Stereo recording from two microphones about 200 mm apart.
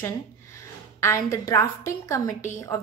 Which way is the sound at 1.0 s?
15° left (ahead or behind).